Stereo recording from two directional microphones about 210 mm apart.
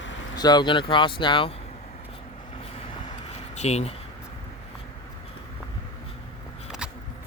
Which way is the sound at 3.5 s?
30° left (ahead or behind).